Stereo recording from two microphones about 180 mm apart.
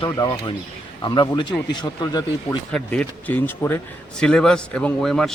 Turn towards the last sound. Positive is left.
turn(degrees=0)  # may be behind; listen again after turning